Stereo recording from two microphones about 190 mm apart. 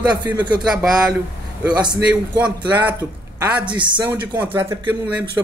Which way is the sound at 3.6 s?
25° right (ahead or behind).